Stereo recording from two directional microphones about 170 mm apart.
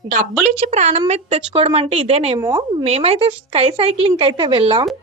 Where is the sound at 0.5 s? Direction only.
40° right (ahead or behind).